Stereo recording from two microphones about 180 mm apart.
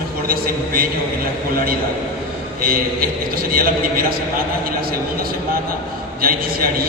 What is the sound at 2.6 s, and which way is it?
Speech, 55° right (ahead or behind).